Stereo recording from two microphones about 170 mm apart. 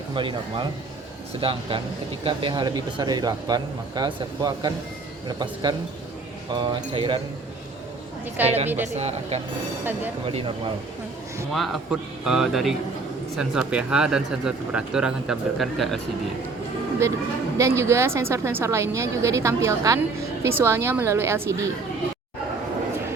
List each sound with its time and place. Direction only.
0.1 s speech: 30° right (ahead or behind)
8.4 s speech: 40° right (ahead or behind)
11.5 s speech: centre (ahead or behind)
17.6 s a woman's voice: 15° right (ahead or behind)